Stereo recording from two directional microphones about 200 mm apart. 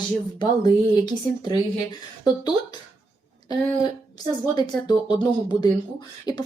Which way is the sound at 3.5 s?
20° left (ahead or behind).